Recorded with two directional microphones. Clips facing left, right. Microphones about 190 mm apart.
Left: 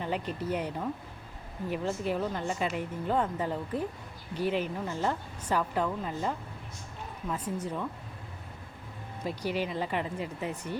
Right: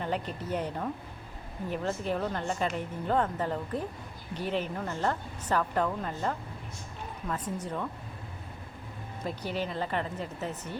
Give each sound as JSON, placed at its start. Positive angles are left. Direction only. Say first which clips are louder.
{"t": 0.0, "sound": "a woman's voice", "louder": "left 1 dB", "side_deg": 5}
{"t": 9.2, "sound": "a woman's voice", "louder": "left 2 dB", "side_deg": 10}